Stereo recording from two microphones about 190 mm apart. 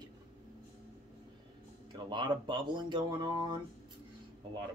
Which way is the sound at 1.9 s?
25° right (ahead or behind).